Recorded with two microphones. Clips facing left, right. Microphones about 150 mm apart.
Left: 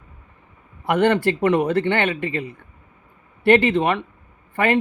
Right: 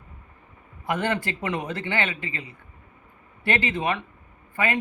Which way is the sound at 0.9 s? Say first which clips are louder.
Left 9 dB; 65° left (ahead or behind).